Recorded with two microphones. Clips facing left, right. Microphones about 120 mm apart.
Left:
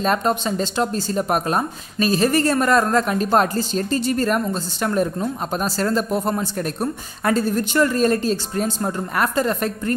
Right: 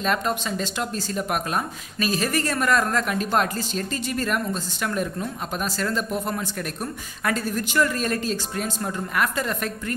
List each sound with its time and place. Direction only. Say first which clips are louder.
0.0 s speech: left 5 dB; 35° left (ahead or behind)